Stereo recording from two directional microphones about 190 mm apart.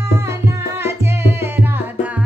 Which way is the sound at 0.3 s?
10° right (ahead or behind).